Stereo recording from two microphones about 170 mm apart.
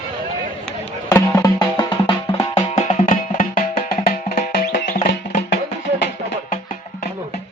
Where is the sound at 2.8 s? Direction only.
45° left (ahead or behind).